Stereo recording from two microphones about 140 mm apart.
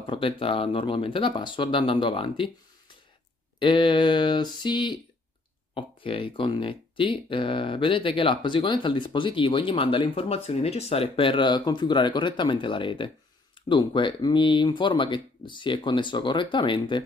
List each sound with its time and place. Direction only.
0.0 s speech: 40° left (ahead or behind)